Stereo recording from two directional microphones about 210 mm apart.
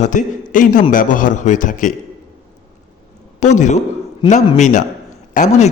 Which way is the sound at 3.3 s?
35° left (ahead or behind).